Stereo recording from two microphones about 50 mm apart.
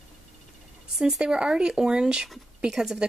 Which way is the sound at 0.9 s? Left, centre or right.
Centre.